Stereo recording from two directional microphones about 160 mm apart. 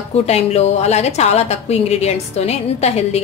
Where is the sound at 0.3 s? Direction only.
40° left (ahead or behind).